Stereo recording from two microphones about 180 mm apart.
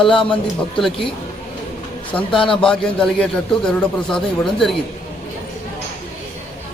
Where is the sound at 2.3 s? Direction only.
30° left (ahead or behind).